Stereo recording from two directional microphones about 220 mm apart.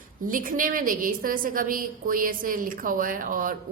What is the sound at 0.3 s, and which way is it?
A woman's voice, 40° right (ahead or behind).